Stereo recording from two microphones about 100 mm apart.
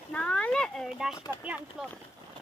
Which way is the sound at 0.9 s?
5° right (ahead or behind).